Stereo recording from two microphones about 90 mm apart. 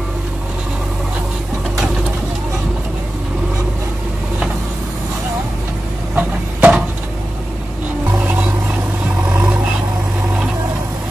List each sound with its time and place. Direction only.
6.1 s a sound: 15° right (ahead or behind)
8.2 s music: 15° right (ahead or behind)
9.3 s vehicle: 20° right (ahead or behind)